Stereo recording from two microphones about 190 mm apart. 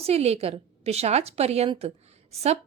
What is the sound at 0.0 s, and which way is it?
A woman's voice, 35° right (ahead or behind).